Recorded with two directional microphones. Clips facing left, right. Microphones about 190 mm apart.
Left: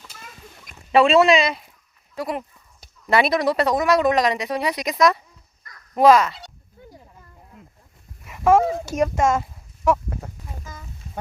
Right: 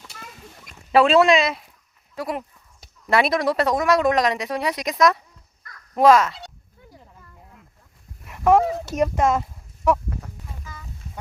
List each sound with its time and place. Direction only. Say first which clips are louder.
0.9 s speech: even; centre (ahead or behind)
8.2 s speech: even; centre (ahead or behind)
10.6 s a sound: left 1 dB; 45° left (ahead or behind)